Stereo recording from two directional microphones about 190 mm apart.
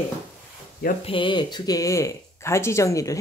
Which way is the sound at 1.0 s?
25° left (ahead or behind).